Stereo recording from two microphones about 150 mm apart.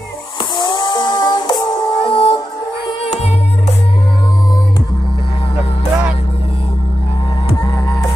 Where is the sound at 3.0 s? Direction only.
45° left (ahead or behind).